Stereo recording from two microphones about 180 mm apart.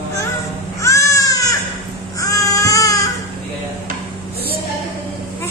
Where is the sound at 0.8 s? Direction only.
15° left (ahead or behind).